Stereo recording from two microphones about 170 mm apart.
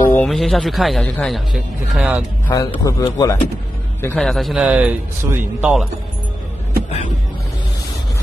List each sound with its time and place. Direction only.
0.1 s a man's voice: 5° left (ahead or behind)
2.5 s speech: 20° left (ahead or behind)
4.0 s a man's voice: 5° left (ahead or behind)